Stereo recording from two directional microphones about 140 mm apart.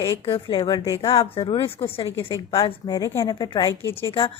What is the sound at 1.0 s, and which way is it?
A woman's voice, 45° left (ahead or behind).